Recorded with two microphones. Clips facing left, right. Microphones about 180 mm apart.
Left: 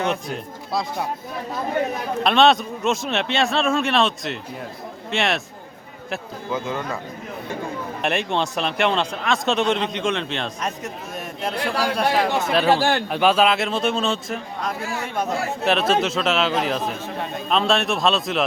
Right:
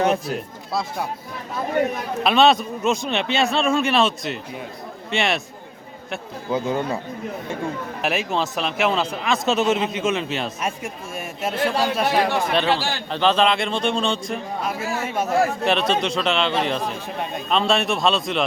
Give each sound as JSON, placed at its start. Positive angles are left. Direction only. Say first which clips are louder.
{"t": 0.3, "sound": "speech", "louder": "right 1 dB", "side_deg": 0}
{"t": 2.2, "sound": "speech", "louder": "even", "side_deg": 0}
{"t": 6.5, "sound": "a man's voice", "louder": "right 4 dB", "side_deg": -30}
{"t": 8.0, "sound": "speech", "louder": "even", "side_deg": -5}
{"t": 12.7, "sound": "a man's voice", "louder": "left 5 dB", "side_deg": 55}
{"t": 13.1, "sound": "speech", "louder": "right 2 dB", "side_deg": 10}